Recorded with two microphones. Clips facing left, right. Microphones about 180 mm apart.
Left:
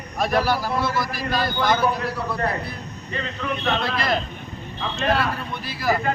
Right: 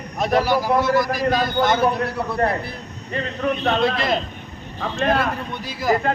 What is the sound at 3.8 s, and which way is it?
Speech, 25° right (ahead or behind).